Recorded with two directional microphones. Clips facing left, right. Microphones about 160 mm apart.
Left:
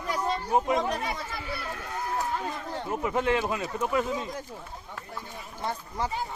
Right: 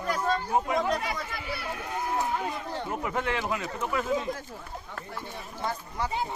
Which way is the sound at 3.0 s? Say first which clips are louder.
Left 6 dB; 20° left (ahead or behind).